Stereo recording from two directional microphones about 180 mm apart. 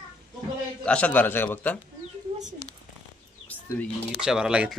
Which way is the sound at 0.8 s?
5° left (ahead or behind).